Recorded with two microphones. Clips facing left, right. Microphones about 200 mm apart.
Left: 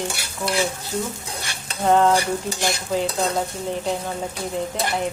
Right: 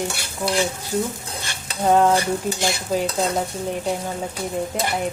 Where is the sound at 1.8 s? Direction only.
15° right (ahead or behind).